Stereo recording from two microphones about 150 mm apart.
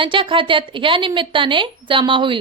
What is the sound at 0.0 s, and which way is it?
Speech, 35° right (ahead or behind).